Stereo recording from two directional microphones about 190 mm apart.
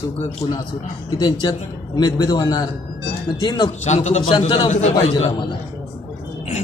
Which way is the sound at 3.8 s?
35° left (ahead or behind).